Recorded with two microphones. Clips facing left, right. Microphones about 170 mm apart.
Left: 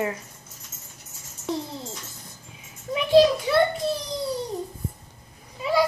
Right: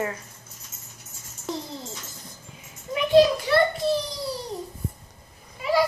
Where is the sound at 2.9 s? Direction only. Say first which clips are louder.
Left 1 dB; centre (ahead or behind).